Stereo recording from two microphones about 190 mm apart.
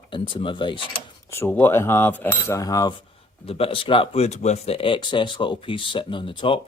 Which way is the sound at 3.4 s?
30° left (ahead or behind).